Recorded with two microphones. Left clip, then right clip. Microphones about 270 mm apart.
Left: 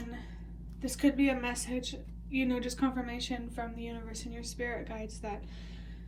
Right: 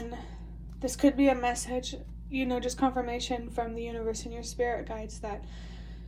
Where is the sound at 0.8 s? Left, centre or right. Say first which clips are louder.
Right 4 dB; centre.